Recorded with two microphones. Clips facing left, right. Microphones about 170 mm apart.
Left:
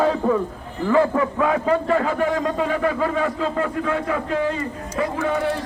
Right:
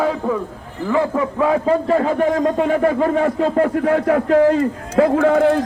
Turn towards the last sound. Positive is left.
turn(degrees=-75)  # may be behind; listen again after turning